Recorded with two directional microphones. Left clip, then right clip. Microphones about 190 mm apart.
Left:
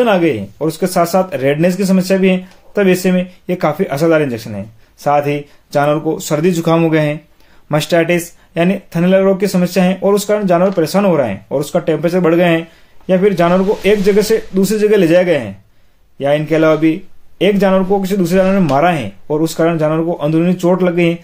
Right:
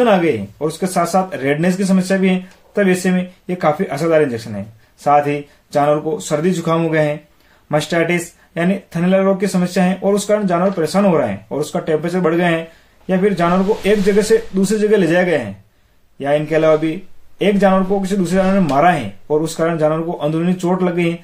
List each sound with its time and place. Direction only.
0.0 s speech: 35° left (ahead or behind)